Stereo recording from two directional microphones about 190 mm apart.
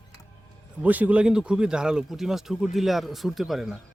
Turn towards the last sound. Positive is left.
turn(degrees=0)  # may be behind; listen again after turning